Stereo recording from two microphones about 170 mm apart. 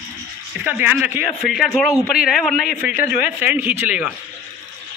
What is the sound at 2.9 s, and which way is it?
Speech, 55° left (ahead or behind).